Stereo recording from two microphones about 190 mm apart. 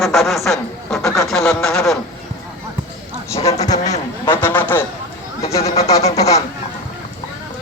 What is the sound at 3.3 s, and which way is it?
Speech, 35° left (ahead or behind).